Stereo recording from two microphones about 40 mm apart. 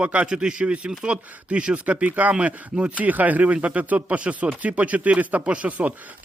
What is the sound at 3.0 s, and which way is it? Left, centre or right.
Speech, right.